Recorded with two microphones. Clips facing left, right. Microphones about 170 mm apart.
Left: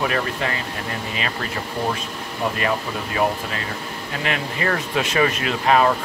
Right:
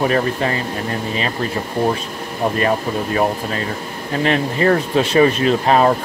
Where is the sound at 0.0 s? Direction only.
35° right (ahead or behind).